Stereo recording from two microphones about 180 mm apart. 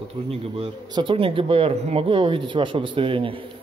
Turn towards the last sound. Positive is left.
turn(degrees=-30)  # may be behind; listen again after turning